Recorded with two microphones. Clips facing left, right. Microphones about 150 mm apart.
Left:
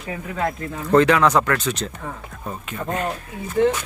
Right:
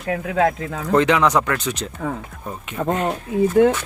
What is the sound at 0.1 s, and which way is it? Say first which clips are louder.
Speech: right 8 dB; 85° right.